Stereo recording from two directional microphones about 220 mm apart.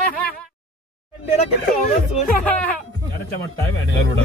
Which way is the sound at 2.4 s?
5° left (ahead or behind).